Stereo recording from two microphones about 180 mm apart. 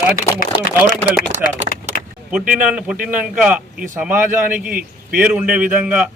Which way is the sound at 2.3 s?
5° right (ahead or behind).